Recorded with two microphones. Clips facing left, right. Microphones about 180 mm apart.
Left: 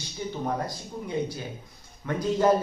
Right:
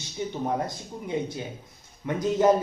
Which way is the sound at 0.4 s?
25° right (ahead or behind).